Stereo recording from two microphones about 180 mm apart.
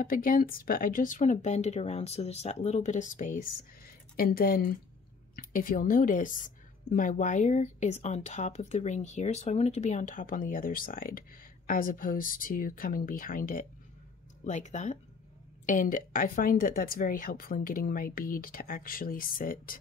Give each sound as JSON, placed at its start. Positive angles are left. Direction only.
{"t": 0.0, "sound": "a woman's voice", "side_deg": 50}